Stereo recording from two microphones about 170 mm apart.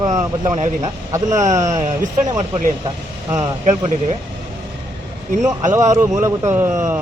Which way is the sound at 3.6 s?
40° right (ahead or behind).